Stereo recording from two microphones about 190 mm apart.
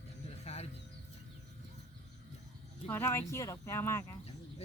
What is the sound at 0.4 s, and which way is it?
Music, 35° left (ahead or behind).